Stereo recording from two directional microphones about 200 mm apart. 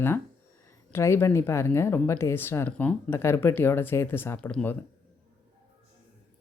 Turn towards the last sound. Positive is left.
turn(degrees=10)  # may be behind; listen again after turning